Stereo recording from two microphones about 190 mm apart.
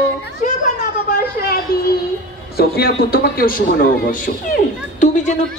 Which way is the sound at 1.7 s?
50° left (ahead or behind).